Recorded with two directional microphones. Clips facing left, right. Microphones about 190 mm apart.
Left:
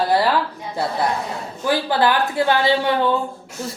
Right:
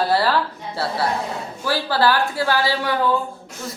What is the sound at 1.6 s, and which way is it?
A woman's voice, 20° left (ahead or behind).